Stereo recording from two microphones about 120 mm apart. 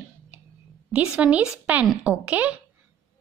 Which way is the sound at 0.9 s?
10° right (ahead or behind).